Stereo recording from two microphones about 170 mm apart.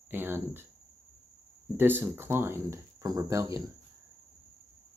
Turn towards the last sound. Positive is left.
turn(degrees=-20)  # may be behind; listen again after turning